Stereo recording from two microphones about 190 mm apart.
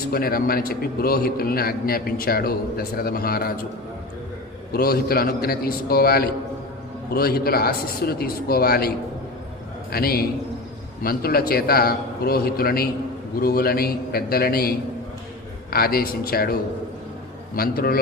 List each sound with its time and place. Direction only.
0.1 s a man's voice: 50° left (ahead or behind)
4.7 s a man's voice: 55° left (ahead or behind)
9.9 s a man's voice: 50° left (ahead or behind)